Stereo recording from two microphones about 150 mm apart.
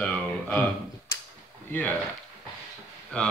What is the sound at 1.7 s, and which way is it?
Speech, 10° left (ahead or behind).